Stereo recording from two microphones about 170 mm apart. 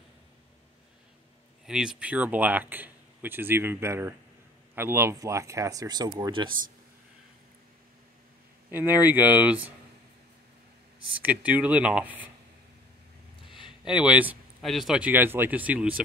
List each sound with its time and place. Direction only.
1.7 s speech: 5° right (ahead or behind); by 6.5 s 25° right (ahead or behind)
8.6 s speech: 10° right (ahead or behind)
11.2 s speech: 10° right (ahead or behind)
13.4 s a sound: 30° left (ahead or behind)
13.8 s speech: 5° right (ahead or behind)